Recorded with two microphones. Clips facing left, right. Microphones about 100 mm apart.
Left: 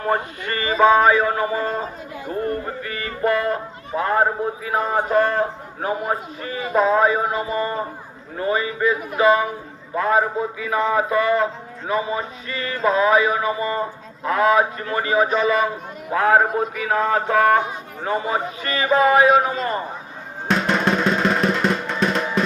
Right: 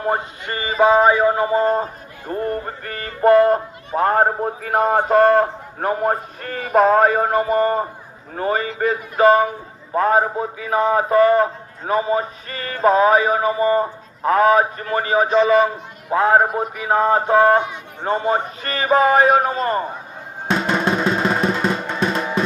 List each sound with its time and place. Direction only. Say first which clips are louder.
0.0 s a sound: even; 20° right (ahead or behind)
2.8 s a man's voice: right 8 dB; 45° right (ahead or behind)
9.1 s music: right 5 dB; 35° right (ahead or behind)
16.1 s a sound: right 1 dB; 25° right (ahead or behind)
18.0 s music: right 3 dB; 35° right (ahead or behind)
20.5 s music: even; 5° right (ahead or behind)